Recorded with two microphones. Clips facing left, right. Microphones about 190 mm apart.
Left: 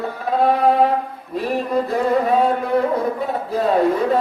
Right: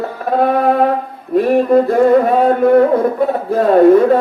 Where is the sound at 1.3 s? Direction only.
55° right (ahead or behind).